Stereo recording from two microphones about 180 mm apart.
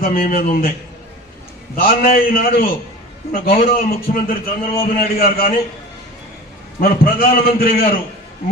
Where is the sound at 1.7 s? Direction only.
55° left (ahead or behind).